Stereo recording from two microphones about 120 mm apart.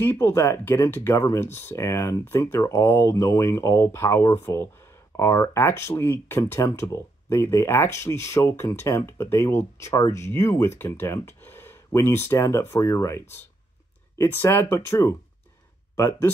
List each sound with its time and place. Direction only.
0.0 s speech: 20° left (ahead or behind)